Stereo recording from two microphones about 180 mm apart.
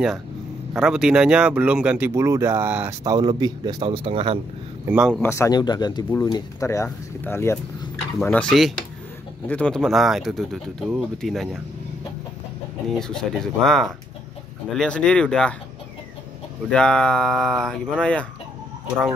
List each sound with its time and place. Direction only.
0.7 s speech: 5° right (ahead or behind)
3.0 s speech: 20° right (ahead or behind)
4.8 s speech: 5° right (ahead or behind)
5.2 s speech: 15° left (ahead or behind)
12.8 s speech: 5° left (ahead or behind)
16.7 s speech: 5° left (ahead or behind)